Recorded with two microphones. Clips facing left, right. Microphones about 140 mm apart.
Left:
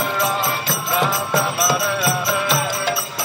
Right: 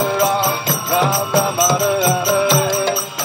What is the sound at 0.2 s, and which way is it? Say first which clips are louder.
Music: right 5 dB; 35° right (ahead or behind).